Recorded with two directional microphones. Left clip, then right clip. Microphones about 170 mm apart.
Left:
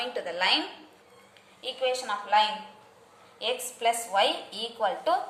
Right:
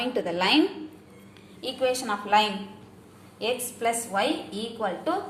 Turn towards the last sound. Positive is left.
turn(degrees=0)  # may be behind; listen again after turning